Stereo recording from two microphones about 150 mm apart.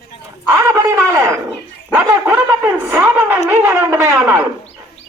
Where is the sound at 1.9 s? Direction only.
15° right (ahead or behind).